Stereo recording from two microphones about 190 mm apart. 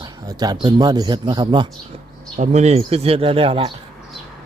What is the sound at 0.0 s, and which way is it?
Speech, 20° right (ahead or behind).